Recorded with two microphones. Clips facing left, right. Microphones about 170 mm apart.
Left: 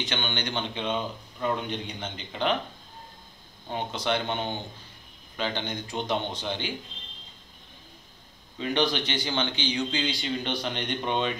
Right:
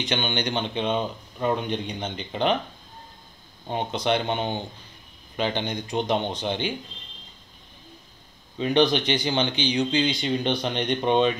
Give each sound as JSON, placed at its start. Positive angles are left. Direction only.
{"t": 0.0, "sound": "speech", "side_deg": -15}
{"t": 3.6, "sound": "speech", "side_deg": -20}
{"t": 8.5, "sound": "speech", "side_deg": -20}